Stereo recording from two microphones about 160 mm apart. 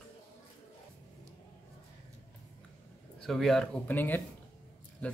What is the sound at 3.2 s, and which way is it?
Speech, centre (ahead or behind).